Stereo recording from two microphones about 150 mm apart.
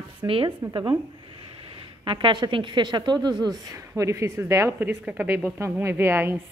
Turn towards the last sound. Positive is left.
turn(degrees=-15)  # may be behind; listen again after turning